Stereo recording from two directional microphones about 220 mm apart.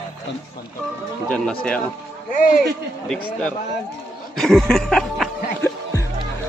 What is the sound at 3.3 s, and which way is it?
Speech, 5° left (ahead or behind).